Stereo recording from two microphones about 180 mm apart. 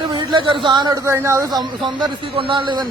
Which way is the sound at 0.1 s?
25° right (ahead or behind).